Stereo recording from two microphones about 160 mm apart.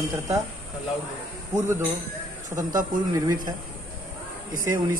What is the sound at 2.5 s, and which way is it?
Speech, 55° right (ahead or behind).